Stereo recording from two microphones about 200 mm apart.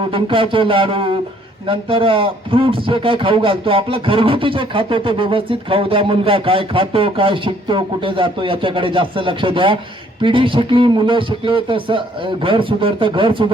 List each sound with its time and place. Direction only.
0.1 s a man's voice: 25° right (ahead or behind)